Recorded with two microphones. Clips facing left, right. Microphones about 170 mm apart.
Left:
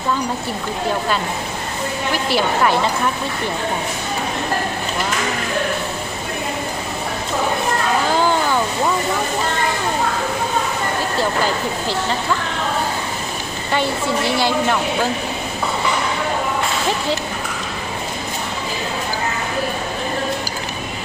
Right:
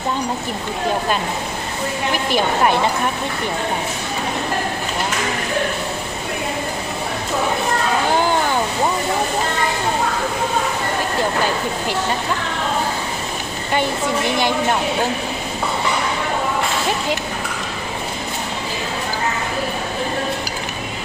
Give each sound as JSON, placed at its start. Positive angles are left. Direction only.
{"t": 2.2, "sound": "speech", "side_deg": -20}